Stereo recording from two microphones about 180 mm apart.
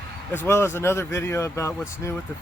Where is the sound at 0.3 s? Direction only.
15° left (ahead or behind).